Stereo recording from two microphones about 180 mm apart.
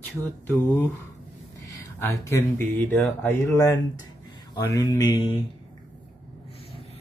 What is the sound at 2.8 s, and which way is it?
Speech, 10° left (ahead or behind).